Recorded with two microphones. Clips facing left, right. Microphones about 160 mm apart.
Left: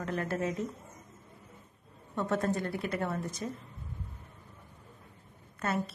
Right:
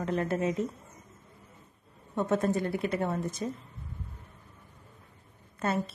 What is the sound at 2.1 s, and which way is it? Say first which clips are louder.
A woman's voice: right 3 dB; 20° right (ahead or behind).